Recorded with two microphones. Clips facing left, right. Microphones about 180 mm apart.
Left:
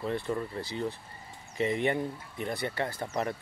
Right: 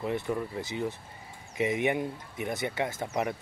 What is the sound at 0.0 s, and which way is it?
Speech, 15° right (ahead or behind).